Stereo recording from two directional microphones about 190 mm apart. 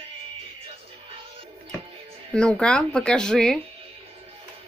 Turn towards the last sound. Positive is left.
turn(degrees=5)  # may be behind; listen again after turning